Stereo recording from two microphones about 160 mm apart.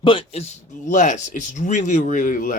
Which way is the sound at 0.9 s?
50° left (ahead or behind).